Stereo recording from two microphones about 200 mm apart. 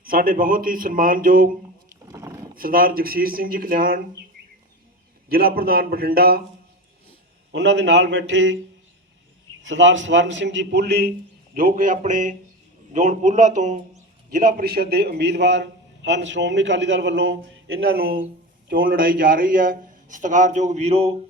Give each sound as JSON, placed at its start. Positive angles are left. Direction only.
{"t": 0.0, "sound": "speech", "side_deg": -45}
{"t": 2.1, "sound": "a sound", "side_deg": -15}
{"t": 2.6, "sound": "speech", "side_deg": -45}
{"t": 5.3, "sound": "speech", "side_deg": -50}
{"t": 7.5, "sound": "a man's voice", "side_deg": -65}
{"t": 9.6, "sound": "a man's voice", "side_deg": -70}
{"t": 11.5, "sound": "a man's voice", "side_deg": -45}
{"t": 17.9, "sound": "a man's voice", "side_deg": -50}